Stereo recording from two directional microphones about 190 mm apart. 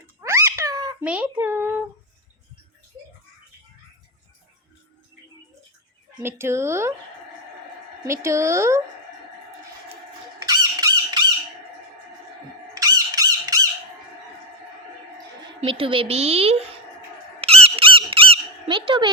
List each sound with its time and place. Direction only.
0.2 s a sound: 15° right (ahead or behind)
1.0 s a sound: 5° right (ahead or behind)
6.2 s speech: 15° right (ahead or behind)
8.0 s speech: 15° right (ahead or behind)
10.4 s fowl: 20° right (ahead or behind)
12.7 s fowl: 20° right (ahead or behind)
15.6 s a woman's voice: 30° right (ahead or behind)
17.4 s squeak: 30° right (ahead or behind)